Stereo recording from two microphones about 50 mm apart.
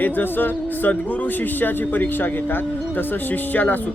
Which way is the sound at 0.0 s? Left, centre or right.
Left.